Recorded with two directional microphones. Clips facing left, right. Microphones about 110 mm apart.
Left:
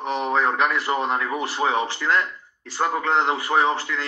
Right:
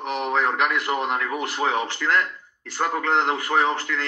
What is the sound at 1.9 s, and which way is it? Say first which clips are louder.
A man's voice: even; 5° left (ahead or behind).